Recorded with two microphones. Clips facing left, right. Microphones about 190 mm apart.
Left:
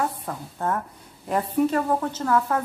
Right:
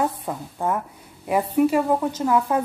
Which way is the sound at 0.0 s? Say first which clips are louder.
Right 3 dB; 15° right (ahead or behind).